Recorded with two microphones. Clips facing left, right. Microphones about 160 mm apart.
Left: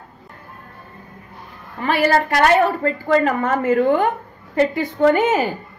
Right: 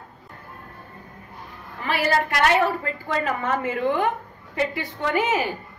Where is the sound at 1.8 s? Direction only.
50° left (ahead or behind).